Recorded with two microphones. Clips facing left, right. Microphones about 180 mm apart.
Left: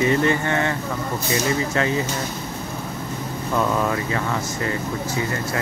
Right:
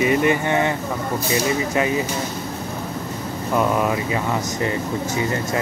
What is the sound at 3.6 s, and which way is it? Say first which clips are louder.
Speech: right 2 dB; 15° right (ahead or behind).